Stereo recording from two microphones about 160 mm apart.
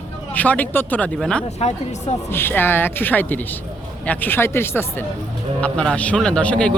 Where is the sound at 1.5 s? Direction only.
40° left (ahead or behind).